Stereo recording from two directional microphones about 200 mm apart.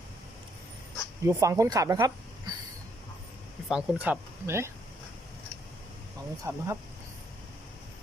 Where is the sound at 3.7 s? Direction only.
5° right (ahead or behind).